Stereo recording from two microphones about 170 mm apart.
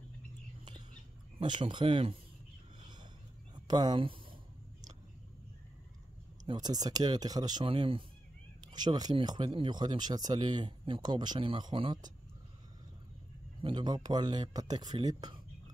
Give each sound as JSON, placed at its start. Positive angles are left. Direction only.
{"t": 1.4, "sound": "speech", "side_deg": -30}
{"t": 2.8, "sound": "a sound", "side_deg": -25}
{"t": 6.4, "sound": "speech", "side_deg": -25}
{"t": 13.6, "sound": "speech", "side_deg": -30}